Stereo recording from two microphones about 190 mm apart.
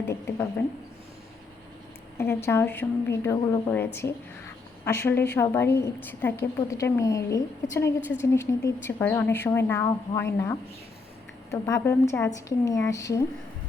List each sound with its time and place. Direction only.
0.1 s a woman's voice: 15° left (ahead or behind)
2.1 s a woman's voice: 15° left (ahead or behind)